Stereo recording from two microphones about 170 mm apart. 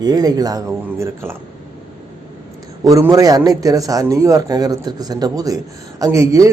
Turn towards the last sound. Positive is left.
turn(degrees=-20)  # may be behind; listen again after turning